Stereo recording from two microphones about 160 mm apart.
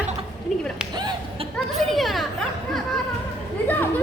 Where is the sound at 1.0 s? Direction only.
25° right (ahead or behind).